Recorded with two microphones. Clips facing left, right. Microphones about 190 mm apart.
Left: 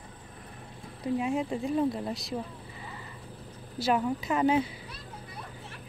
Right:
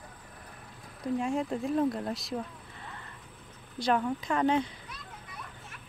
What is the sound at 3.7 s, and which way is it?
Speech, 5° left (ahead or behind).